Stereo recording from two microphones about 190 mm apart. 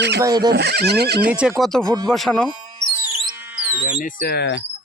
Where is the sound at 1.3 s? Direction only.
5° right (ahead or behind).